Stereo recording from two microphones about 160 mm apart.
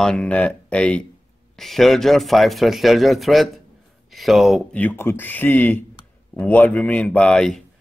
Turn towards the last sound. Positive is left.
turn(degrees=5)  # may be behind; listen again after turning